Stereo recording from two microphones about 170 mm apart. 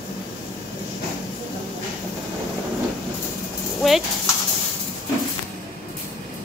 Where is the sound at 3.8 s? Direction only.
Centre (ahead or behind).